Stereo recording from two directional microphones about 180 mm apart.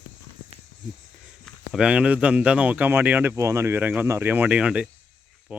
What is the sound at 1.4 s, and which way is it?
Speech, 5° right (ahead or behind).